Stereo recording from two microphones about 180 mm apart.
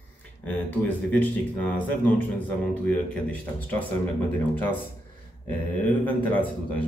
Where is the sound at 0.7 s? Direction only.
10° left (ahead or behind).